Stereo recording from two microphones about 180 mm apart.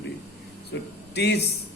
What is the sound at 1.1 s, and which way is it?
Speech, 65° left (ahead or behind).